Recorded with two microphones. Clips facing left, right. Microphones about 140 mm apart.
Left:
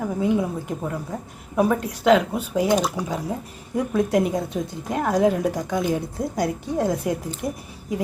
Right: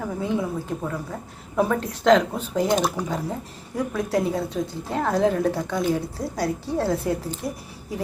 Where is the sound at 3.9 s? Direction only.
20° left (ahead or behind).